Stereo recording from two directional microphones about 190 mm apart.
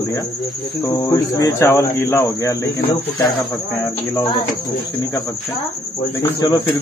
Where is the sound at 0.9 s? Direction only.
20° left (ahead or behind).